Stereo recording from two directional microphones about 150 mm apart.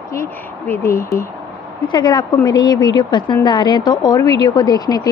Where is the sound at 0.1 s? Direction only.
20° left (ahead or behind).